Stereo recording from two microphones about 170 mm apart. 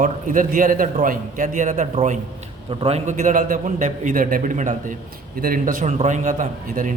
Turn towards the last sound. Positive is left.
turn(degrees=-50)  # may be behind; listen again after turning